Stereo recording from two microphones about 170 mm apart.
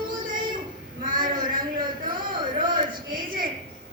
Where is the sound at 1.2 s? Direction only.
55° right (ahead or behind).